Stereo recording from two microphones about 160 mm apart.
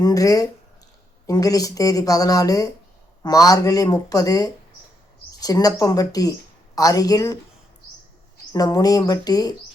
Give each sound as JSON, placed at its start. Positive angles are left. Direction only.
{"t": 0.0, "sound": "speech", "side_deg": 20}
{"t": 8.5, "sound": "speech", "side_deg": 25}